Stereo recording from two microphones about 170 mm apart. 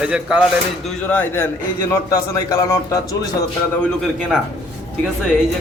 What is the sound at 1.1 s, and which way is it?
A man's voice, 10° left (ahead or behind).